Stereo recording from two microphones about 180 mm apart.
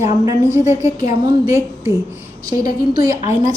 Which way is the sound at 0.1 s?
20° right (ahead or behind).